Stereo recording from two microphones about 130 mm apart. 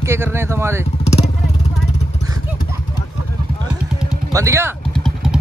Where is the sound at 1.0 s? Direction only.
55° left (ahead or behind).